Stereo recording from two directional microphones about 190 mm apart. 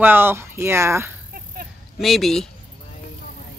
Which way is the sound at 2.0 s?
Centre (ahead or behind).